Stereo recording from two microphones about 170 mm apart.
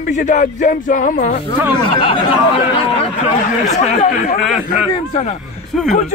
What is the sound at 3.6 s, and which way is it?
Speech, 45° left (ahead or behind).